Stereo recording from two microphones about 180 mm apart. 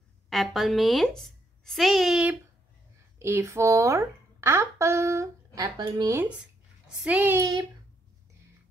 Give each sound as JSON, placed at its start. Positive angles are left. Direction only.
{"t": 0.3, "sound": "a child's voice", "side_deg": 0}
{"t": 3.2, "sound": "speech", "side_deg": -15}
{"t": 7.0, "sound": "speech", "side_deg": -10}